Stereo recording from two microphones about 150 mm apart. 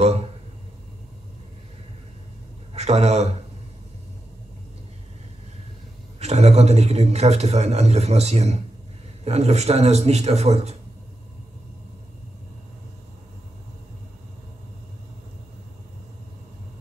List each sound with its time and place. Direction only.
0.0 s a sound: 45° right (ahead or behind)
2.7 s a man's voice: 45° right (ahead or behind)
6.1 s a man's voice: 45° right (ahead or behind)